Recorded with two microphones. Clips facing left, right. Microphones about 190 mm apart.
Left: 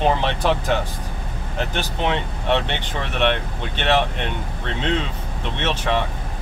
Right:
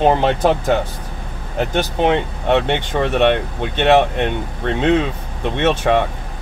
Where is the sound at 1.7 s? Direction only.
50° right (ahead or behind).